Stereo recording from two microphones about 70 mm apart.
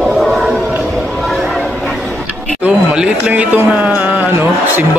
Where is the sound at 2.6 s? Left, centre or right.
Centre.